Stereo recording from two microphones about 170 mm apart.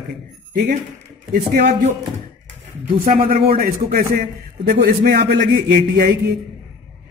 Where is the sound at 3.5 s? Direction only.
60° right (ahead or behind).